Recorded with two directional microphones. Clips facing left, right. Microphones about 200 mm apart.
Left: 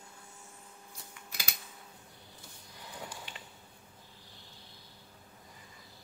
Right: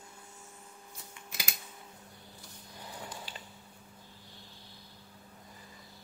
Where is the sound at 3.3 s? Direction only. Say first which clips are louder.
Right 2 dB; 35° right (ahead or behind).